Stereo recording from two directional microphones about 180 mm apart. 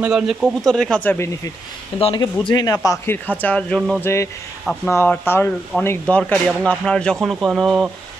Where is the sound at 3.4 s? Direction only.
5° left (ahead or behind).